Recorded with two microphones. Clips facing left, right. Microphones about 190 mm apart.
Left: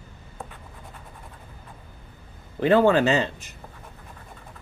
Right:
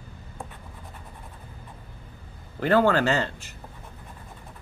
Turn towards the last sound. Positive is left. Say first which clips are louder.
# left 3 dB
turn(degrees=15)  # may be behind; listen again after turning